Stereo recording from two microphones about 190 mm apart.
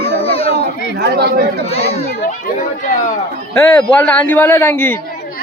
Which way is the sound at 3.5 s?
10° left (ahead or behind).